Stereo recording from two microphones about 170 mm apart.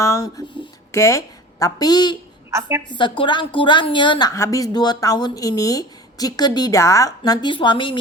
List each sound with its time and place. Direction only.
0.0 s a woman's voice: 20° left (ahead or behind)
2.5 s a woman's voice: 15° right (ahead or behind)
2.9 s a woman's voice: 30° left (ahead or behind)